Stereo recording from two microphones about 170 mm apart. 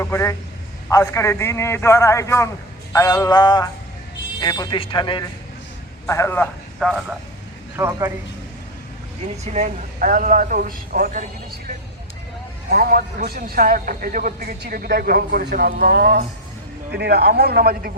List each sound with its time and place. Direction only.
0.0 s a man's voice: 15° left (ahead or behind)
6.1 s a man's voice: 15° left (ahead or behind)
6.7 s speech: centre (ahead or behind)
7.8 s speech: 20° right (ahead or behind)
9.3 s speech: 40° right (ahead or behind)
12.7 s a man's voice: 60° right (ahead or behind)